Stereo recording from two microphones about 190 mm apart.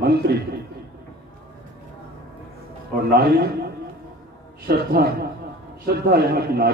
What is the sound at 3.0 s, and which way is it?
Speech, 55° right (ahead or behind).